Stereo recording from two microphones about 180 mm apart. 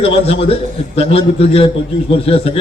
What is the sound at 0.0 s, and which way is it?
A man's voice, 35° left (ahead or behind).